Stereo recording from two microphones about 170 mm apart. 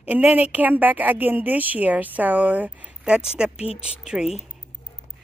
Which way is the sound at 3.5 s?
35° left (ahead or behind).